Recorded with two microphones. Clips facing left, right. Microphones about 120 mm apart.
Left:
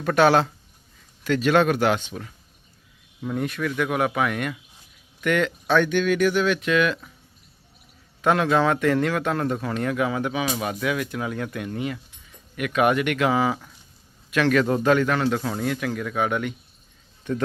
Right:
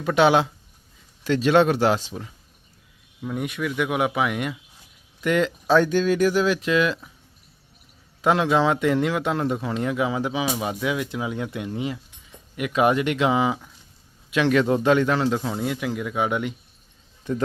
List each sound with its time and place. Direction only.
0.0 s speech: 15° right (ahead or behind)
1.2 s a man's voice: 30° right (ahead or behind)
3.2 s speech: centre (ahead or behind)
3.4 s speech: 10° right (ahead or behind)
8.2 s a man's voice: 20° right (ahead or behind)